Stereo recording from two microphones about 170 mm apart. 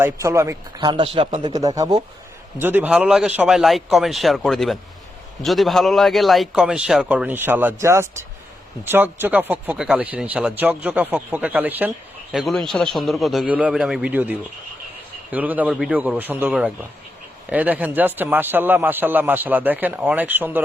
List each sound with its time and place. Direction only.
0.0 s a man's voice: 15° right (ahead or behind)